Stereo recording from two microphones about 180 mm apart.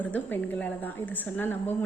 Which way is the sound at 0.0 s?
10° left (ahead or behind).